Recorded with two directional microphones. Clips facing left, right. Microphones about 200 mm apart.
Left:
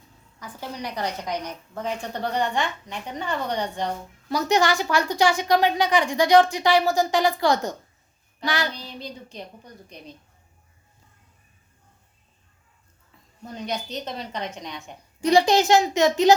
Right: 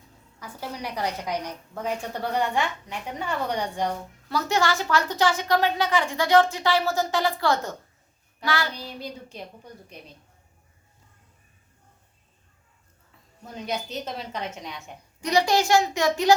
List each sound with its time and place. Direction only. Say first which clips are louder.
0.3 s a woman's voice: left 1 dB; 10° right (ahead or behind)
4.3 s a woman's voice: left 3 dB; 15° left (ahead or behind)
8.7 s a woman's voice: right 1 dB; 10° right (ahead or behind)
13.7 s a woman's voice: even; 5° right (ahead or behind)
15.2 s a child's voice: left 4 dB; 30° left (ahead or behind)